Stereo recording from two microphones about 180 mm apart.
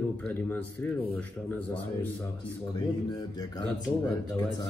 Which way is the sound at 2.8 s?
25° left (ahead or behind).